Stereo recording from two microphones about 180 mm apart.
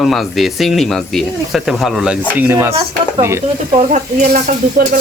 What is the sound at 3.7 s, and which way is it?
Speech, 45° right (ahead or behind).